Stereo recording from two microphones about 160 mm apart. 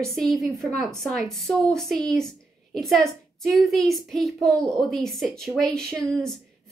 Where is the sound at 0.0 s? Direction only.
Centre (ahead or behind).